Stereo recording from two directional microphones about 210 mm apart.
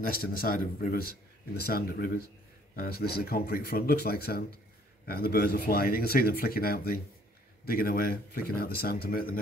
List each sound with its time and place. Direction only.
0.0 s a man's voice: 45° left (ahead or behind)